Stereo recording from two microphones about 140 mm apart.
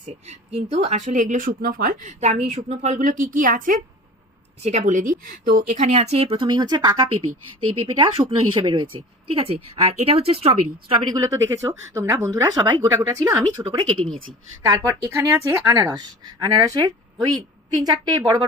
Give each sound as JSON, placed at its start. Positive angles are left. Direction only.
{"t": 0.0, "sound": "speech", "side_deg": -50}
{"t": 4.6, "sound": "speech", "side_deg": -55}
{"t": 11.1, "sound": "speech", "side_deg": -25}
{"t": 13.0, "sound": "speech", "side_deg": -20}
{"t": 13.7, "sound": "speech", "side_deg": -35}
{"t": 14.7, "sound": "a woman's voice", "side_deg": -25}